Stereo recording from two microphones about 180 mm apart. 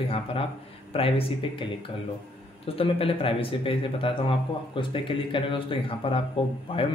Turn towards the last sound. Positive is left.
turn(degrees=30)  # may be behind; listen again after turning